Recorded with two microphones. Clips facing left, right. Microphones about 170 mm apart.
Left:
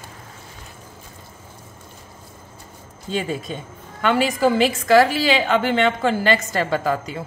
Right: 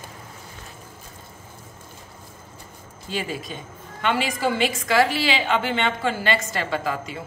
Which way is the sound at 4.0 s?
45° left (ahead or behind).